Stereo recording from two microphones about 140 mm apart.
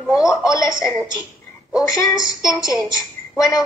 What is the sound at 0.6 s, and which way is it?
A woman's voice, 25° left (ahead or behind).